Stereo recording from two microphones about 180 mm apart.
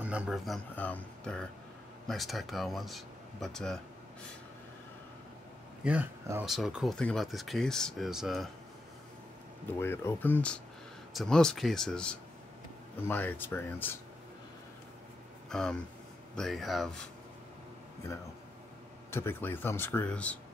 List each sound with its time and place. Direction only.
0.0 s speech: 5° right (ahead or behind)
0.7 s speech: 10° left (ahead or behind)
5.9 s speech: 10° right (ahead or behind)
9.8 s speech: 10° left (ahead or behind)
15.5 s speech: 5° left (ahead or behind)
19.0 s speech: 15° left (ahead or behind)